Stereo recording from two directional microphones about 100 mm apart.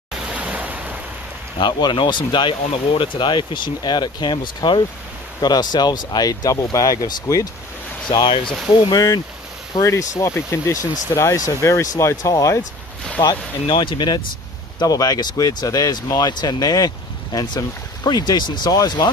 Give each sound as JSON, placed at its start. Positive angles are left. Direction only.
{"t": 0.1, "sound": "waves", "side_deg": -10}
{"t": 1.6, "sound": "speech", "side_deg": 50}
{"t": 8.9, "sound": "speech", "side_deg": 40}
{"t": 13.7, "sound": "speech", "side_deg": 55}